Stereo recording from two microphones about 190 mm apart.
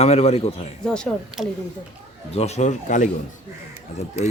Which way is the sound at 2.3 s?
35° left (ahead or behind).